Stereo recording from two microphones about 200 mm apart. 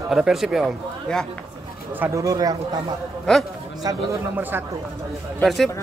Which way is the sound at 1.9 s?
15° right (ahead or behind).